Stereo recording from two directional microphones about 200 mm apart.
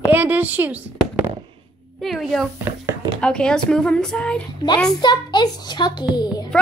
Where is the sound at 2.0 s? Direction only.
Centre (ahead or behind).